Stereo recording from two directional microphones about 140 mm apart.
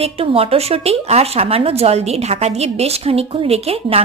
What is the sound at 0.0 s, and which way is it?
Speech, 45° right (ahead or behind).